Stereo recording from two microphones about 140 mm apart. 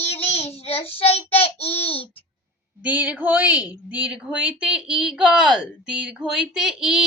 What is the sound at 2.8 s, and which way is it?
A woman's voice, 10° right (ahead or behind).